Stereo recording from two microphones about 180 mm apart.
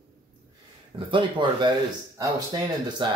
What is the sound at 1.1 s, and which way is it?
Speech, 25° right (ahead or behind).